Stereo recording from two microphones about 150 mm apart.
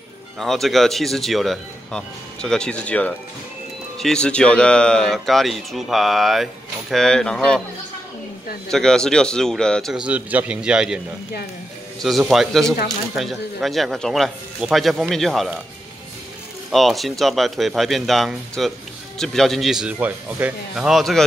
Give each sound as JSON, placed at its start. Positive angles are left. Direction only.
{"t": 0.4, "sound": "speech", "side_deg": 0}
{"t": 8.6, "sound": "speech", "side_deg": 5}
{"t": 12.0, "sound": "speech", "side_deg": 0}
{"t": 16.7, "sound": "speech", "side_deg": 0}